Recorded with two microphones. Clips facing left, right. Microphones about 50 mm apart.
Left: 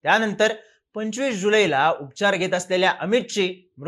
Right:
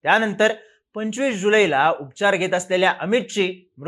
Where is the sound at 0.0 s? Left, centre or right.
Centre.